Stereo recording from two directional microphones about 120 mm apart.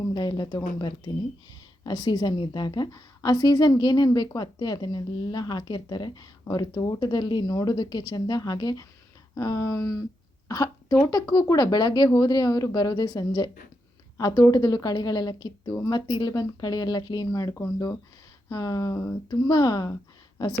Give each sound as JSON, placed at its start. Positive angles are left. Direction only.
{"t": 0.1, "sound": "a woman's voice", "side_deg": 35}
{"t": 9.3, "sound": "a sound", "side_deg": 25}
{"t": 10.5, "sound": "a woman's voice", "side_deg": 30}